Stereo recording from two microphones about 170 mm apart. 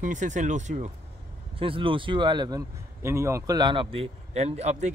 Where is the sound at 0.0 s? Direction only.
45° right (ahead or behind).